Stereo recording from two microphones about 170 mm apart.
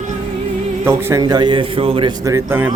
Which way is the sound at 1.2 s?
25° right (ahead or behind).